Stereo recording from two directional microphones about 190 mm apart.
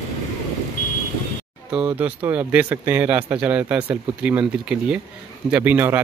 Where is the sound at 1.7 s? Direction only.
10° right (ahead or behind).